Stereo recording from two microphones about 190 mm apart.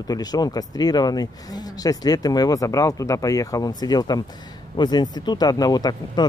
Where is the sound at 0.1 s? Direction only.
20° left (ahead or behind).